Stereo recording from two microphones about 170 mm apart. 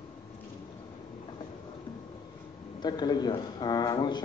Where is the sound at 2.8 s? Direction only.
25° left (ahead or behind).